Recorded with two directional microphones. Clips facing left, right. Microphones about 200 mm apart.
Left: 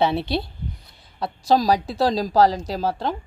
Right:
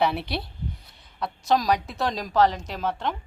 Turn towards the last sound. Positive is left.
turn(degrees=35)  # may be behind; listen again after turning